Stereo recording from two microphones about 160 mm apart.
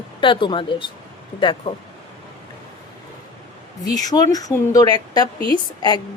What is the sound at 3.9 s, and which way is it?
A woman's voice, 25° left (ahead or behind).